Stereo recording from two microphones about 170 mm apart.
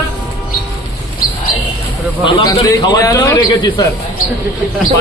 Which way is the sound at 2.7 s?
20° left (ahead or behind).